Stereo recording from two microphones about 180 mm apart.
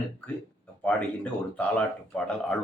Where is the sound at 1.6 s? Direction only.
5° left (ahead or behind).